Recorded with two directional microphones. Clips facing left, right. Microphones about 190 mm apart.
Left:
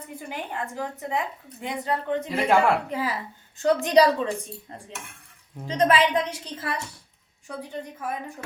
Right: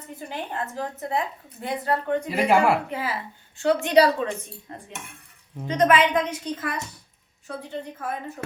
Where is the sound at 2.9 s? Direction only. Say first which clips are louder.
Left 1 dB; 35° left (ahead or behind).